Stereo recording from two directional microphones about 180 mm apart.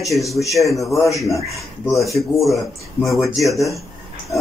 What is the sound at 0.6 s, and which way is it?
Speech, 15° left (ahead or behind).